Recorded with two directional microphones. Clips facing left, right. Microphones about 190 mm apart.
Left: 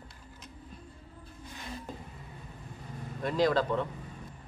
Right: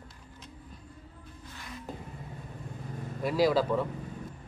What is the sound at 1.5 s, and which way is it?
Music, 30° left (ahead or behind).